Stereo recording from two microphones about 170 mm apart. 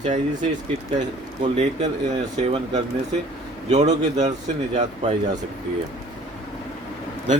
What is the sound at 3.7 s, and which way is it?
A man's voice, 40° right (ahead or behind).